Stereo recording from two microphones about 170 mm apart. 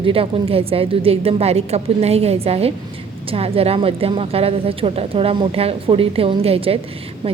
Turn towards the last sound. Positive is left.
turn(degrees=-35)  # may be behind; listen again after turning